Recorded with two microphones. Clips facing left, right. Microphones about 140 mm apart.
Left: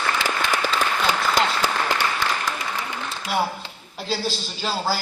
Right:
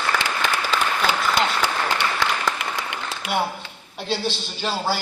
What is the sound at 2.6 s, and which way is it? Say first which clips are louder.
Applause: even; 70° right (ahead or behind).